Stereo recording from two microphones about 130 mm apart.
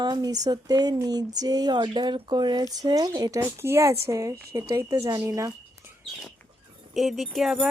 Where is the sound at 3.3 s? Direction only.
20° right (ahead or behind).